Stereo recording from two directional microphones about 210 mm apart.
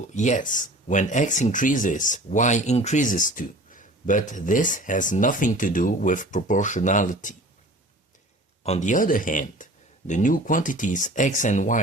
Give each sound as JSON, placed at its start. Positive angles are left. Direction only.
{"t": 0.1, "sound": "speech", "side_deg": 35}
{"t": 8.6, "sound": "speech", "side_deg": 35}